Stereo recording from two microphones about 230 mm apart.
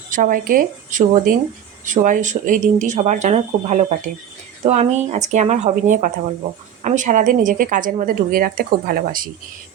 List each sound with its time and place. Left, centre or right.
0.1 s a woman's voice: right